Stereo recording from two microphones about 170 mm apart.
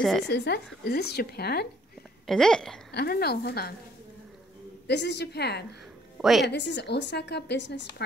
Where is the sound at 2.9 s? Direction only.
70° left (ahead or behind).